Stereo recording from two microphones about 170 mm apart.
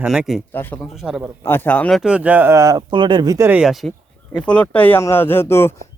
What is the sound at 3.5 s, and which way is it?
Speech, 5° right (ahead or behind).